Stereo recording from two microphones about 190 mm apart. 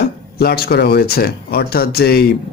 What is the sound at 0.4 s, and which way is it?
A man's voice, 55° left (ahead or behind).